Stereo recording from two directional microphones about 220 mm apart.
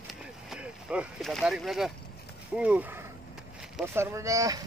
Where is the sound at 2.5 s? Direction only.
5° right (ahead or behind).